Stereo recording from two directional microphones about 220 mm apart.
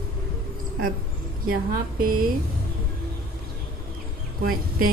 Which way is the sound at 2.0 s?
40° right (ahead or behind).